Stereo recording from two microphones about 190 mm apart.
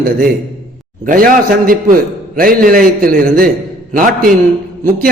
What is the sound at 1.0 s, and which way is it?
A man's voice, 45° right (ahead or behind).